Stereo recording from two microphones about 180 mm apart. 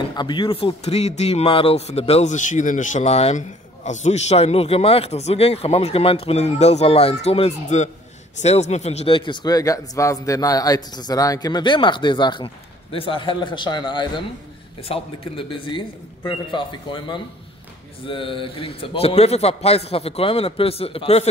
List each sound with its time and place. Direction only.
0.1 s a man's voice: 25° left (ahead or behind)